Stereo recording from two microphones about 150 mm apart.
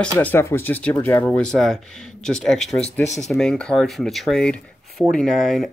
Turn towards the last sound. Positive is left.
turn(degrees=5)  # may be behind; listen again after turning